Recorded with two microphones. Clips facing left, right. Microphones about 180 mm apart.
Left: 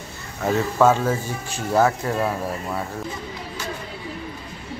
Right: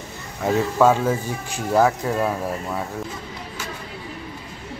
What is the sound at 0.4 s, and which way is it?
A man's voice, 5° right (ahead or behind).